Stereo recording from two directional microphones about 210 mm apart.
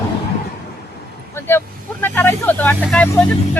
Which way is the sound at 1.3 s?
10° left (ahead or behind).